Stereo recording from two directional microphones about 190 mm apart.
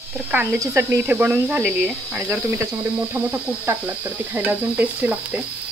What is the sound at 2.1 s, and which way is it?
Speech, 15° right (ahead or behind).